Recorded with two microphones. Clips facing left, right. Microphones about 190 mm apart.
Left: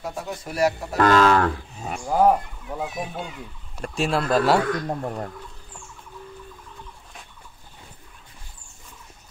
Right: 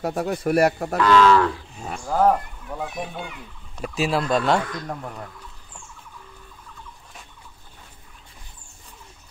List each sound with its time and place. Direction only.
0.0 s speech: 60° right (ahead or behind)
0.9 s speech: 50° left (ahead or behind)
1.9 s speech: 15° left (ahead or behind)
5.0 s speech: 40° left (ahead or behind)